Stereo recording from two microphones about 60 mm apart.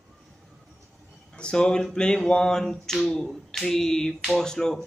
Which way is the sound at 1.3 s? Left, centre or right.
Centre.